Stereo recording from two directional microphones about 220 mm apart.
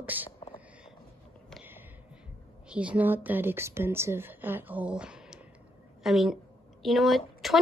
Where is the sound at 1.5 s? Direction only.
10° right (ahead or behind).